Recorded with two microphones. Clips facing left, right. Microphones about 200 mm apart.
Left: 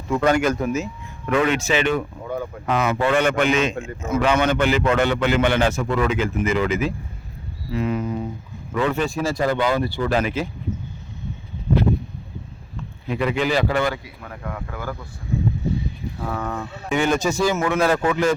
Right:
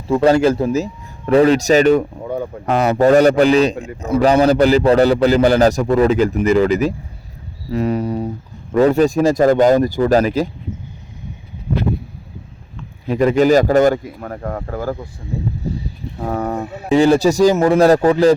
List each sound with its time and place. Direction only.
0.1 s a man's voice: 30° right (ahead or behind)
13.1 s speech: 40° right (ahead or behind)
15.6 s a sound: 35° right (ahead or behind)
16.9 s a man's voice: 35° right (ahead or behind)